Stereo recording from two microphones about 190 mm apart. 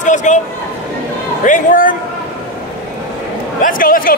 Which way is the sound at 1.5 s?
45° left (ahead or behind).